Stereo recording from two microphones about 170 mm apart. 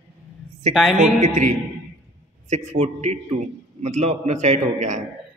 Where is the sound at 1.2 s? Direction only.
45° right (ahead or behind).